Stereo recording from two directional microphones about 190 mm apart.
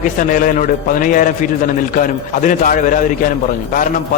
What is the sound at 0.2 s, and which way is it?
A man's voice, 45° left (ahead or behind).